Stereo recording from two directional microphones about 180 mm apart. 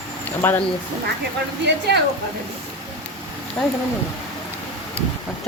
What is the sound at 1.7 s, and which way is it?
Speech, 65° right (ahead or behind).